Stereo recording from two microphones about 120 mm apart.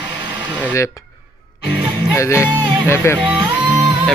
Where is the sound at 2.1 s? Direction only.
25° left (ahead or behind).